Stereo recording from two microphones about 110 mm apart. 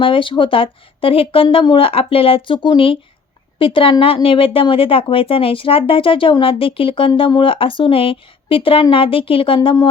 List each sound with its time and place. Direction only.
0.0 s speech: 50° left (ahead or behind)